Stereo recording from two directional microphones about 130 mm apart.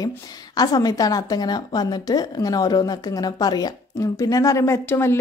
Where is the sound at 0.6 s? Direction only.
30° left (ahead or behind).